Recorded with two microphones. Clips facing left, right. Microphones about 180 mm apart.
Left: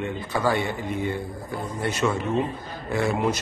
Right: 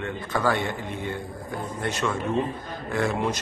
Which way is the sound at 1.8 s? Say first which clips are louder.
Left 2 dB; 10° left (ahead or behind).